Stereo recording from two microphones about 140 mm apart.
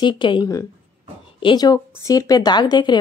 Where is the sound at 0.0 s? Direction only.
35° left (ahead or behind).